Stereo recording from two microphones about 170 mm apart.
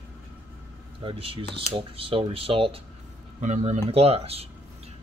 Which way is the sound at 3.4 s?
45° right (ahead or behind).